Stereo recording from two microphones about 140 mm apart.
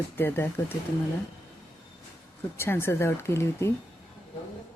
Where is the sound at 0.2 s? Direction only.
15° left (ahead or behind).